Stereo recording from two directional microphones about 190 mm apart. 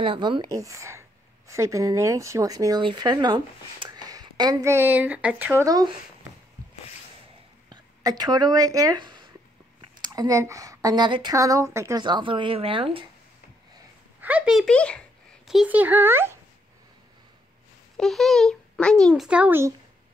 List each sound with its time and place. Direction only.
0.0 s a woman's voice: 25° right (ahead or behind)
7.7 s a woman's voice: 20° right (ahead or behind)
14.2 s speech: 5° right (ahead or behind)
17.9 s a child's voice: centre (ahead or behind)